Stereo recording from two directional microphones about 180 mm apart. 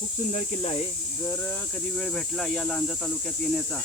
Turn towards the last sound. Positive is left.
turn(degrees=0)  # may be behind; listen again after turning